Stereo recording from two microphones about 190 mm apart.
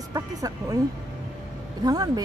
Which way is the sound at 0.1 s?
20° right (ahead or behind).